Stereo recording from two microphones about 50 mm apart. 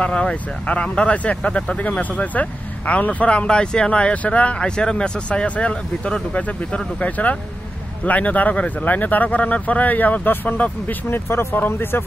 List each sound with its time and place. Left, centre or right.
0.0 s speech: left